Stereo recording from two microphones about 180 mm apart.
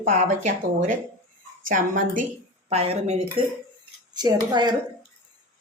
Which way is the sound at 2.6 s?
35° right (ahead or behind).